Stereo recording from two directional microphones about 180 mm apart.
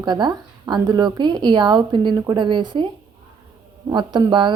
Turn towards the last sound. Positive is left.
turn(degrees=-25)  # may be behind; listen again after turning